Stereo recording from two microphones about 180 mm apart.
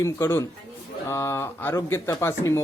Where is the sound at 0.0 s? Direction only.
15° left (ahead or behind).